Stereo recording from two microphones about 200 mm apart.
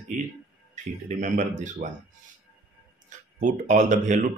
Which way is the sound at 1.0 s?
40° right (ahead or behind).